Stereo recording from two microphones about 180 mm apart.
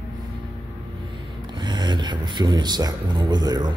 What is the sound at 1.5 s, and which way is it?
Music, 25° right (ahead or behind).